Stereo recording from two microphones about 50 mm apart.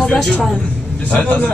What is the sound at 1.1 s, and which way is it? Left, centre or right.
Speech, left.